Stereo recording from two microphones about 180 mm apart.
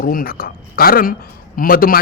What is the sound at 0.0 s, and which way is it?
Speech, 55° left (ahead or behind).